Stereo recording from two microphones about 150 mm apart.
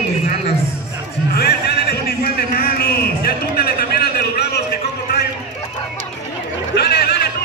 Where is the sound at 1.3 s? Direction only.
90° left.